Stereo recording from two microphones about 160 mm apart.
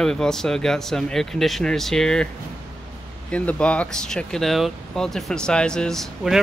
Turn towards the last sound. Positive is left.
turn(degrees=0)  # may be behind; listen again after turning